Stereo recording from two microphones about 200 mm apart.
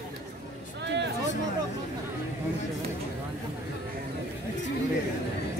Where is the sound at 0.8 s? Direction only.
55° right (ahead or behind).